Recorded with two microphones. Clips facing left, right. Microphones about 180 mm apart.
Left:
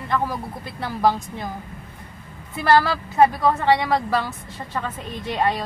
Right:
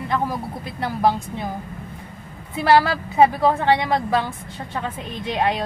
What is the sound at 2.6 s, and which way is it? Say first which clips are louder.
A woman's voice: right 1 dB; 10° right (ahead or behind).